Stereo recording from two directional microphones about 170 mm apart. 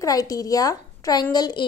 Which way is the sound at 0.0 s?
20° left (ahead or behind).